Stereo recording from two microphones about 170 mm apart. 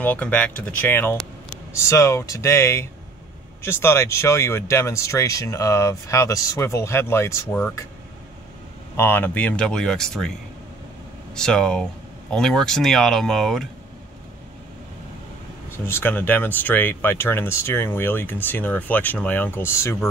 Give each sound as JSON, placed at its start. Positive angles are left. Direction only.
{"t": 0.0, "sound": "speech", "side_deg": 10}
{"t": 8.9, "sound": "speech", "side_deg": 15}
{"t": 11.3, "sound": "speech", "side_deg": 5}
{"t": 15.9, "sound": "speech", "side_deg": 10}